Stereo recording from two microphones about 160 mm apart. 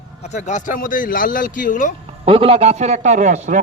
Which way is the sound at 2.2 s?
40° right (ahead or behind).